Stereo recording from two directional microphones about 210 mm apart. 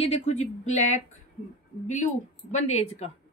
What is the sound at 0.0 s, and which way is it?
A woman's voice, 30° left (ahead or behind).